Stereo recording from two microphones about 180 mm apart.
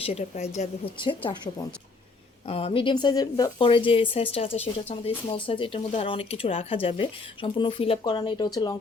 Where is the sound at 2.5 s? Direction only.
30° left (ahead or behind).